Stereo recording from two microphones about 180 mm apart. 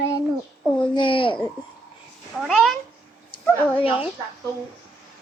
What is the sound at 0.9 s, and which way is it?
Speech, 25° left (ahead or behind).